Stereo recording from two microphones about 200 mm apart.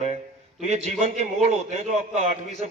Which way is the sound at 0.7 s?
35° right (ahead or behind).